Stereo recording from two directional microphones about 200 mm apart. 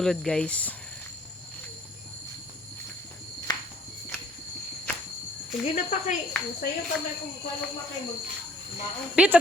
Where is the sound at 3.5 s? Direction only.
20° left (ahead or behind).